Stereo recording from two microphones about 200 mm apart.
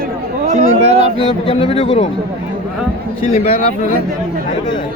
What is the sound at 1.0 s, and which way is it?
Speech, 30° left (ahead or behind).